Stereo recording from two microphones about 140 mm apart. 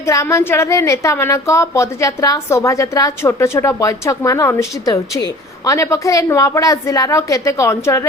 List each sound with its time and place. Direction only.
0.0 s a woman's voice: 20° left (ahead or behind)